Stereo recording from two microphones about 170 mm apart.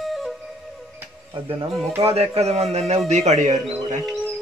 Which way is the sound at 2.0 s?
35° right (ahead or behind).